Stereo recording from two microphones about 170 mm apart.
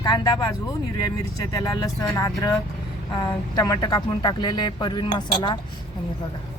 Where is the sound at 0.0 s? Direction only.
25° left (ahead or behind).